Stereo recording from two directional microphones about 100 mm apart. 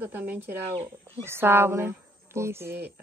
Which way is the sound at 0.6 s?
90° right.